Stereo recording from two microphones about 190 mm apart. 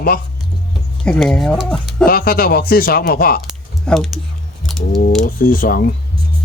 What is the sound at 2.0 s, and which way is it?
Speech, 50° left (ahead or behind).